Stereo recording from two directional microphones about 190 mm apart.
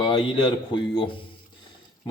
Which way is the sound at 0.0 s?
25° left (ahead or behind).